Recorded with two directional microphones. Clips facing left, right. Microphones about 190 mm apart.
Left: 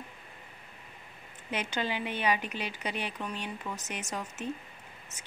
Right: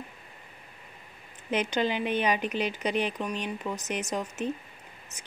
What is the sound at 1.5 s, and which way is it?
A woman's voice, 20° right (ahead or behind).